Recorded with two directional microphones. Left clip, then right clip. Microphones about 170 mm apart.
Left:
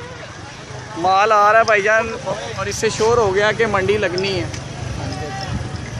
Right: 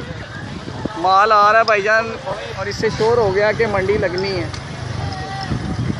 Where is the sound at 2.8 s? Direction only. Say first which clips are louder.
Even; 5° left (ahead or behind).